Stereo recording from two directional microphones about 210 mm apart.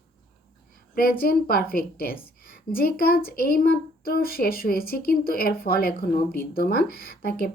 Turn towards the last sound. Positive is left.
turn(degrees=45)  # may be behind; listen again after turning